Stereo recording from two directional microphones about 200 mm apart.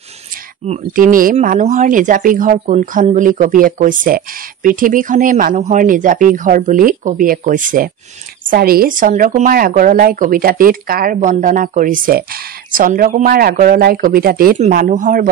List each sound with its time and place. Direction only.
0.7 s a woman's voice: 40° right (ahead or behind)